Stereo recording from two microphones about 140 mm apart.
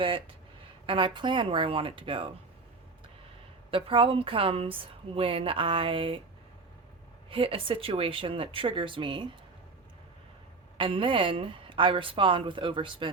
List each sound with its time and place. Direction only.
0.9 s a woman's voice: 35° right (ahead or behind)
3.7 s a woman's voice: 40° right (ahead or behind)
7.3 s a woman's voice: 40° right (ahead or behind)
10.8 s a woman's voice: 40° right (ahead or behind)